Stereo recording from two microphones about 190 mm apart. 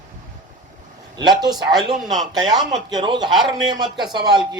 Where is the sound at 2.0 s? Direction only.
Centre (ahead or behind).